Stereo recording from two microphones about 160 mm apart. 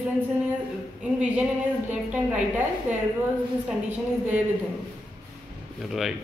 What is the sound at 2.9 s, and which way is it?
Speech, 10° right (ahead or behind).